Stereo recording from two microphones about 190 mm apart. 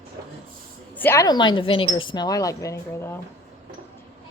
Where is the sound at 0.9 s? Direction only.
10° left (ahead or behind).